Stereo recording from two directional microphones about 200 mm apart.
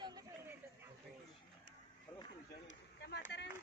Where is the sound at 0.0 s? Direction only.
20° right (ahead or behind).